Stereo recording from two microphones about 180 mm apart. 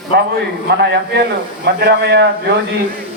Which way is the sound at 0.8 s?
65° right (ahead or behind).